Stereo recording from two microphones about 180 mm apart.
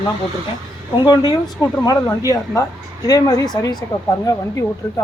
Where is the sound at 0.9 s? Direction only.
25° left (ahead or behind).